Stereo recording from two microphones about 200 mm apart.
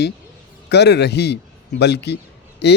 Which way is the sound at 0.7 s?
55° left (ahead or behind).